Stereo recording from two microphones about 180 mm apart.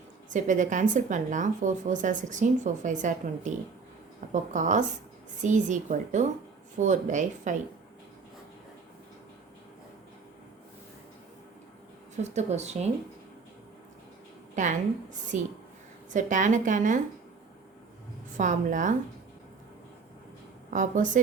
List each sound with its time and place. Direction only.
0.3 s speech: 45° right (ahead or behind)
12.1 s speech: 40° right (ahead or behind)
14.5 s a woman's voice: 45° right (ahead or behind)
18.3 s speech: 45° right (ahead or behind)
20.7 s speech: 45° right (ahead or behind)